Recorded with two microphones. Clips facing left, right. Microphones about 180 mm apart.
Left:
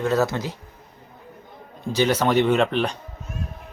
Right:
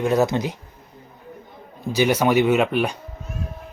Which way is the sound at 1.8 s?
10° right (ahead or behind).